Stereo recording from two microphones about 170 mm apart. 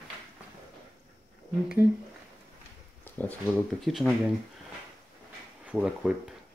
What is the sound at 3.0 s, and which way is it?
Speech, 10° left (ahead or behind).